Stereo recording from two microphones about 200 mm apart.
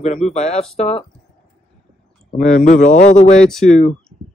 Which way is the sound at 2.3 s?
40° left (ahead or behind).